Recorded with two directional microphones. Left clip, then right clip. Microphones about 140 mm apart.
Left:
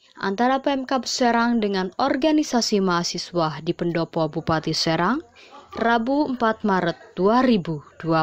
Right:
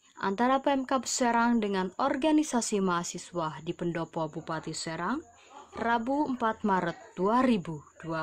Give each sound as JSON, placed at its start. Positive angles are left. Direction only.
{"t": 0.2, "sound": "a woman's voice", "side_deg": 15}
{"t": 4.5, "sound": "speech", "side_deg": 40}
{"t": 5.8, "sound": "speech", "side_deg": 25}